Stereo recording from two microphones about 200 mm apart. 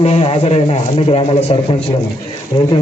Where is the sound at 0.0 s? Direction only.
30° left (ahead or behind).